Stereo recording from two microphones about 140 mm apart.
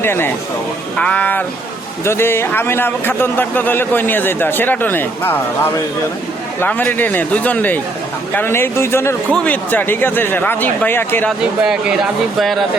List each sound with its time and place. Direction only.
0.0 s a man's voice: 15° left (ahead or behind)
11.3 s speech: 5° right (ahead or behind)